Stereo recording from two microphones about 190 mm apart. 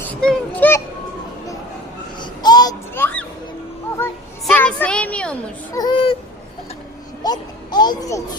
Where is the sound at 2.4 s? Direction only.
20° left (ahead or behind).